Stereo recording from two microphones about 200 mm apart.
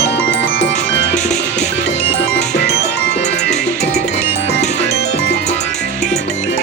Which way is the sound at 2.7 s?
60° left (ahead or behind).